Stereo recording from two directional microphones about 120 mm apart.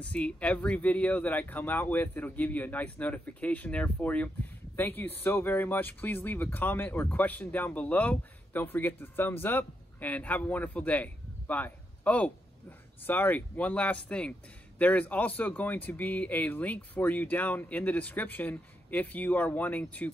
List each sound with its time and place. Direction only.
0.1 s speech: 10° left (ahead or behind)